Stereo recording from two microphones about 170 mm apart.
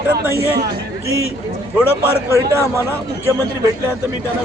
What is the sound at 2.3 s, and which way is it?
Speech, 15° right (ahead or behind).